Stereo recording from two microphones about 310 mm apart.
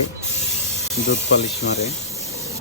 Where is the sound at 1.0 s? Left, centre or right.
Left.